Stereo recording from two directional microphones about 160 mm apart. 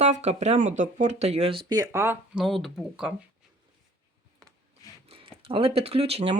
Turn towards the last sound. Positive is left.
turn(degrees=-40)  # may be behind; listen again after turning